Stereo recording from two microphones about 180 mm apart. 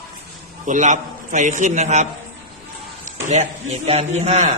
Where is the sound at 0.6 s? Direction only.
45° right (ahead or behind).